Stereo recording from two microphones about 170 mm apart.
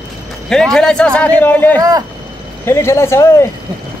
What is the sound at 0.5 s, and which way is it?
Speech, 5° left (ahead or behind).